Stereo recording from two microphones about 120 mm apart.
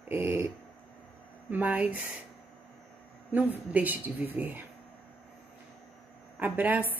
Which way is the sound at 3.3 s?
15° right (ahead or behind).